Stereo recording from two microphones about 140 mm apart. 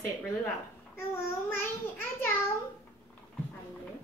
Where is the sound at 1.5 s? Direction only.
15° left (ahead or behind).